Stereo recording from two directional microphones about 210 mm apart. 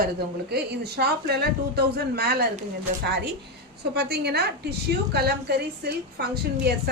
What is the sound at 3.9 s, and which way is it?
A woman's voice, 50° right (ahead or behind).